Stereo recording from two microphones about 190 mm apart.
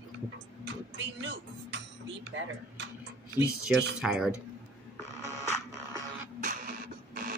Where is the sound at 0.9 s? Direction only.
70° right (ahead or behind).